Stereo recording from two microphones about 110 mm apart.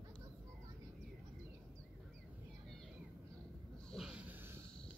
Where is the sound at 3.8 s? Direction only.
5° right (ahead or behind).